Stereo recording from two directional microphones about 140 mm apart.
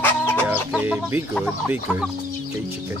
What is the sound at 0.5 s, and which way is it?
Chicken, 10° right (ahead or behind).